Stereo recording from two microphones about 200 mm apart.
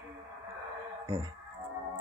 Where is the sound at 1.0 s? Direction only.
15° right (ahead or behind).